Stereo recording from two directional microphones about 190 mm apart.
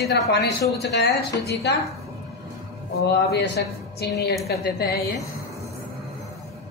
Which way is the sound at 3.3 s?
60° left (ahead or behind).